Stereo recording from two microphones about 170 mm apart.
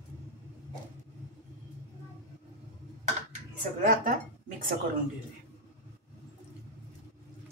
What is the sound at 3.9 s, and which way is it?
Speech, 55° right (ahead or behind).